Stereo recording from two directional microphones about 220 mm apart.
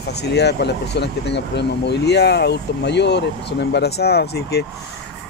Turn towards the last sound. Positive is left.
turn(degrees=45)  # may be behind; listen again after turning